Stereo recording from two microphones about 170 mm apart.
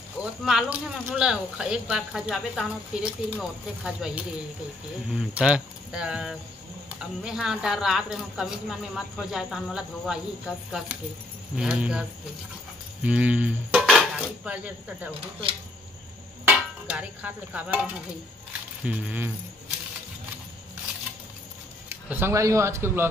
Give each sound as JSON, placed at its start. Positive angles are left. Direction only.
{"t": 0.2, "sound": "a woman's voice", "side_deg": -5}
{"t": 13.0, "sound": "cutlery", "side_deg": -10}
{"t": 16.4, "sound": "a sound", "side_deg": -10}
{"t": 18.9, "sound": "cutlery", "side_deg": -10}
{"t": 21.8, "sound": "speech", "side_deg": -15}